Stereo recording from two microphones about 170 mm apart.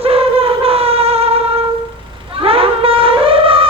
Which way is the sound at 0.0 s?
35° right (ahead or behind).